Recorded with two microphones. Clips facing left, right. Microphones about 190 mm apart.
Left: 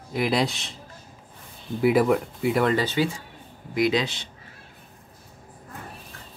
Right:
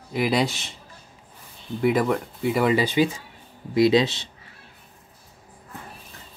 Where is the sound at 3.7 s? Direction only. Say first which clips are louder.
Right 5 dB; 25° right (ahead or behind).